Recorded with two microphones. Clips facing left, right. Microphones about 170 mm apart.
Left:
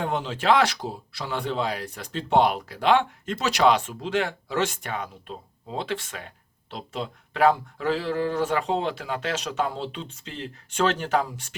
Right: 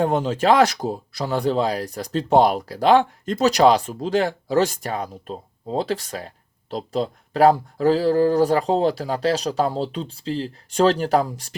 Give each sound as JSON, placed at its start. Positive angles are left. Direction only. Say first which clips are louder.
{"t": 0.0, "sound": "speech", "louder": "right 7 dB", "side_deg": -45}